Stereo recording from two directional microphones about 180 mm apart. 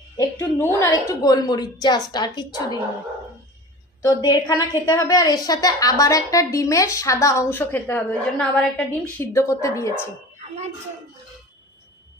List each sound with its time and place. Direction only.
0.2 s a woman's voice: 15° left (ahead or behind)
4.0 s a woman's voice: 20° left (ahead or behind)